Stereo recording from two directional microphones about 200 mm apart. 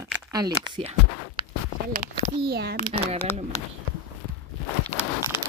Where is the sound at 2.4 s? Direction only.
55° right (ahead or behind).